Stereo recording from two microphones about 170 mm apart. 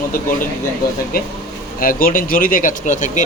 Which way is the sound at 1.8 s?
55° left (ahead or behind).